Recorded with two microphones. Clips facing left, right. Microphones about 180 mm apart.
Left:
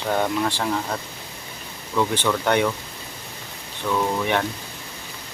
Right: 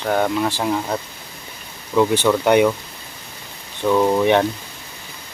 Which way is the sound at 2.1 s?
10° right (ahead or behind).